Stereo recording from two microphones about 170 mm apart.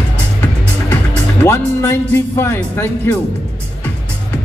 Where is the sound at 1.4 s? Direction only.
15° left (ahead or behind).